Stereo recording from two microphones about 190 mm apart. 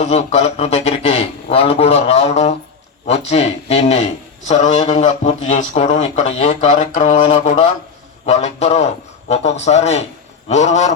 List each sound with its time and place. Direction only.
0.0 s speech: 35° left (ahead or behind)